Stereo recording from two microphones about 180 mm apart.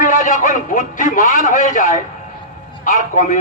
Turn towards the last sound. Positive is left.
turn(degrees=45)  # may be behind; listen again after turning